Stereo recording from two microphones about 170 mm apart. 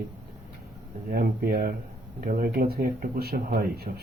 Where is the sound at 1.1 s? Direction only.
60° right (ahead or behind).